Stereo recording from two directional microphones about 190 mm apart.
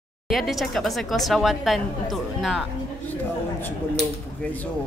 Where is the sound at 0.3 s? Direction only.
Centre (ahead or behind).